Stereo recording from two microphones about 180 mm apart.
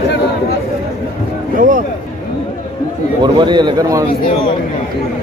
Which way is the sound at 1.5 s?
45° right (ahead or behind).